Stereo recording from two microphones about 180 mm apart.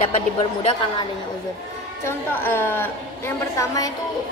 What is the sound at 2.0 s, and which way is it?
A woman's voice, 10° left (ahead or behind).